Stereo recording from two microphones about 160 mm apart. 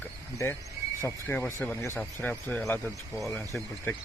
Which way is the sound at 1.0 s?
15° left (ahead or behind).